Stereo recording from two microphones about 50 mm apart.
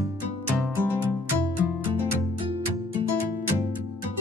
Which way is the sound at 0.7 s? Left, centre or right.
Left.